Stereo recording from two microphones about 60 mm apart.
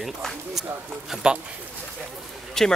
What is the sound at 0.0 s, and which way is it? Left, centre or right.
Speech, centre.